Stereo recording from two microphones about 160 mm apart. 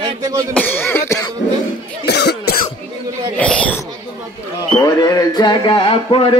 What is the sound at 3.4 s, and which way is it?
Speech, 10° left (ahead or behind).